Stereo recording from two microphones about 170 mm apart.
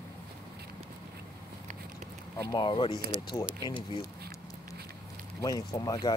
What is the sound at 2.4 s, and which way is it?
Speech, 25° left (ahead or behind).